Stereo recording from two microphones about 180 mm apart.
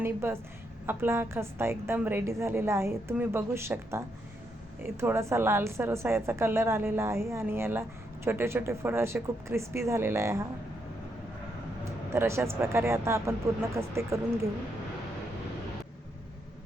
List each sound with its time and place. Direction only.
0.0 s a woman's voice: 15° right (ahead or behind)
12.1 s a woman's voice: 15° right (ahead or behind)